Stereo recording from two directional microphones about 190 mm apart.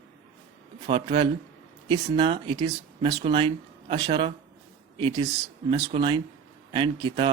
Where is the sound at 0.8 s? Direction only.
30° right (ahead or behind).